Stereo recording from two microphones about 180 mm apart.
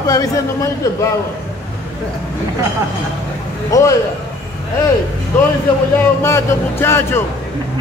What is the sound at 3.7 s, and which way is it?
Speech, 15° left (ahead or behind).